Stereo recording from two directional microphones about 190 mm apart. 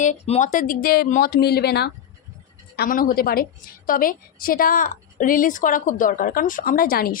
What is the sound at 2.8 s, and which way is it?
Speech, 50° left (ahead or behind).